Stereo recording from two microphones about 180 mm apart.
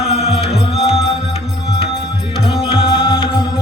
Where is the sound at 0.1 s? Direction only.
35° left (ahead or behind).